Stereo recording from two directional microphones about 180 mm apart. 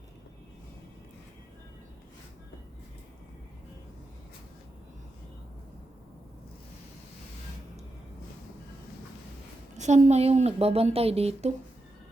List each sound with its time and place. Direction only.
9.7 s a woman's voice: 40° right (ahead or behind)